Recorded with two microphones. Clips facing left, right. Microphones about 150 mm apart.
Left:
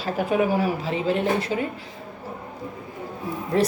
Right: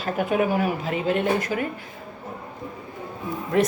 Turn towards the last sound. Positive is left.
turn(degrees=30)  # may be behind; listen again after turning